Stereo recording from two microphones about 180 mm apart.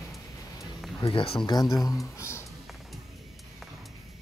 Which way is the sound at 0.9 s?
30° left (ahead or behind).